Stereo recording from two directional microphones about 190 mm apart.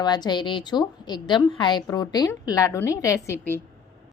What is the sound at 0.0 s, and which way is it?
A woman's voice, 20° left (ahead or behind).